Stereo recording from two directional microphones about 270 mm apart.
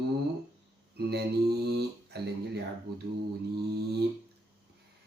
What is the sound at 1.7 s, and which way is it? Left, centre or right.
Speech, right.